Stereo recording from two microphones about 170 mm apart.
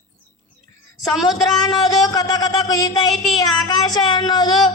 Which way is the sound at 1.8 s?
25° left (ahead or behind).